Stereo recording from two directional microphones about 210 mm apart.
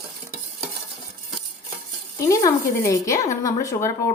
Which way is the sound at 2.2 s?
15° left (ahead or behind).